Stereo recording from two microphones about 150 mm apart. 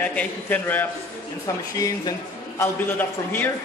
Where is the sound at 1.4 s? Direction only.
20° left (ahead or behind).